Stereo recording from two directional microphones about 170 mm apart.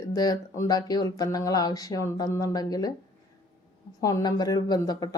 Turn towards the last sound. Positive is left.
turn(degrees=20)  # may be behind; listen again after turning